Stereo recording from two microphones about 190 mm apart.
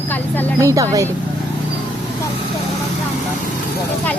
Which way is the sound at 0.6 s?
15° right (ahead or behind).